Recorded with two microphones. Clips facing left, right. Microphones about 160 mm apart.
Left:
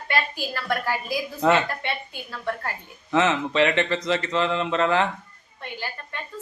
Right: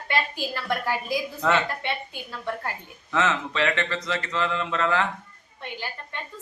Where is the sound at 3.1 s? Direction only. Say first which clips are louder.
Left 4 dB; 20° left (ahead or behind).